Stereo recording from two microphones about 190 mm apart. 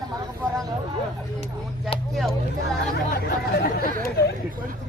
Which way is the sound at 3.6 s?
55° left (ahead or behind).